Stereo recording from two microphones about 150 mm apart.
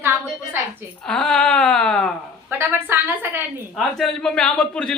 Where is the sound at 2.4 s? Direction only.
15° right (ahead or behind).